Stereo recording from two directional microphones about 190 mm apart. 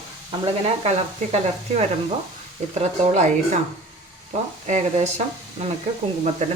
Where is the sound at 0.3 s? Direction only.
30° right (ahead or behind).